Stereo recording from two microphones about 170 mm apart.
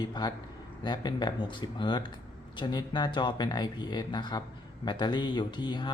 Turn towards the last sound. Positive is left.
turn(degrees=25)  # may be behind; listen again after turning